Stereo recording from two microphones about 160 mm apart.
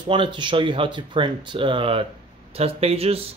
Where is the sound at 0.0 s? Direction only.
30° right (ahead or behind).